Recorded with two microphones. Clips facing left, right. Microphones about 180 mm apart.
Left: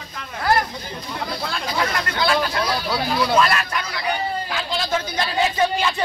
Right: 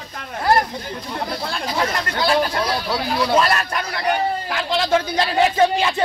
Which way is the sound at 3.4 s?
40° right (ahead or behind).